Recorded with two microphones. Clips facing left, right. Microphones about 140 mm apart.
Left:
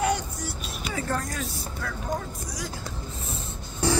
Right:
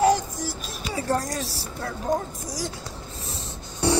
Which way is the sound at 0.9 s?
35° right (ahead or behind).